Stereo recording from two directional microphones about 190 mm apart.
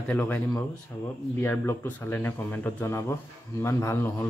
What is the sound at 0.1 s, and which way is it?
Speech, 10° left (ahead or behind).